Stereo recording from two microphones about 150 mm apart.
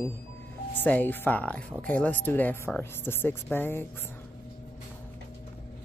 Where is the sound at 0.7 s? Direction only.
10° left (ahead or behind).